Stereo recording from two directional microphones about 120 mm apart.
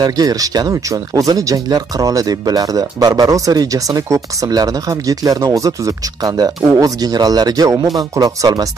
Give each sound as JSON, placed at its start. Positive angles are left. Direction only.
{"t": 0.0, "sound": "speech", "side_deg": -30}